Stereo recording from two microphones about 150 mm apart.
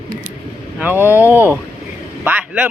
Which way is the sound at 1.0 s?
20° left (ahead or behind).